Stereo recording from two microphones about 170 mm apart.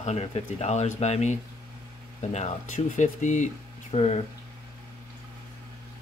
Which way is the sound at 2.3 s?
45° left (ahead or behind).